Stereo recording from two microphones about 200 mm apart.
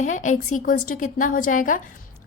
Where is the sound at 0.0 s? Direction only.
40° left (ahead or behind).